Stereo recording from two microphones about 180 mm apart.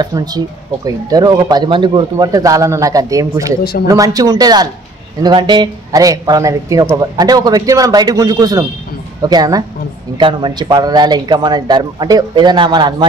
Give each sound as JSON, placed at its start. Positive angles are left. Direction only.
{"t": 0.0, "sound": "speech", "side_deg": -20}